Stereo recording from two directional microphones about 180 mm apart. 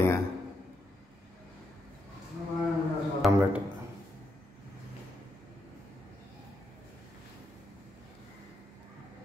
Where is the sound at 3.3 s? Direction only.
15° right (ahead or behind).